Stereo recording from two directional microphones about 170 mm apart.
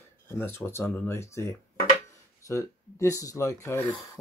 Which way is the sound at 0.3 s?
15° left (ahead or behind).